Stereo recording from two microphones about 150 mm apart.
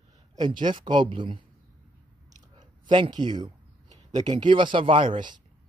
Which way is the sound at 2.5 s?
30° right (ahead or behind).